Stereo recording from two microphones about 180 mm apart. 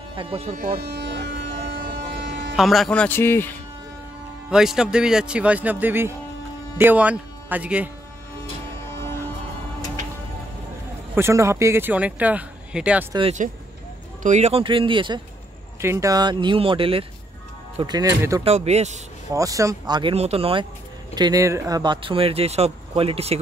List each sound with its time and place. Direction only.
0.1 s speech: 30° right (ahead or behind)
0.7 s electric shaver: 65° right (ahead or behind)
2.5 s speech: centre (ahead or behind)
4.5 s speech: 5° right (ahead or behind)
11.1 s speech: 15° right (ahead or behind)
14.2 s speech: 40° right (ahead or behind)
15.8 s speech: 15° right (ahead or behind)
18.4 s speech: 35° right (ahead or behind)
19.3 s speech: 15° right (ahead or behind)
21.1 s speech: 20° right (ahead or behind)